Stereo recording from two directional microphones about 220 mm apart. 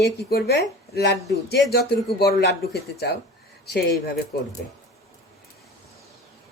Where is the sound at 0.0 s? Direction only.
45° left (ahead or behind).